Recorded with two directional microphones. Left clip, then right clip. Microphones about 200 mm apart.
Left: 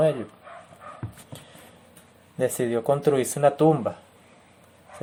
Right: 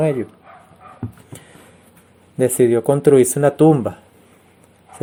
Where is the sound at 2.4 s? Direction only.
35° right (ahead or behind).